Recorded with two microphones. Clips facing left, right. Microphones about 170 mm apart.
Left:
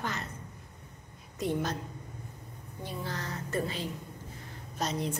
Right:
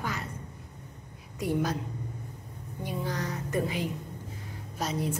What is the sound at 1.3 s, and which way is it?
Speech, 10° right (ahead or behind).